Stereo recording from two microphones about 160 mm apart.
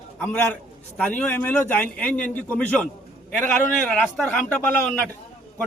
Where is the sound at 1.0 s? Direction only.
10° left (ahead or behind).